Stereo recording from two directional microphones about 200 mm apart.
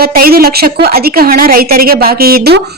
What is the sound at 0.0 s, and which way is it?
Speech, 50° right (ahead or behind).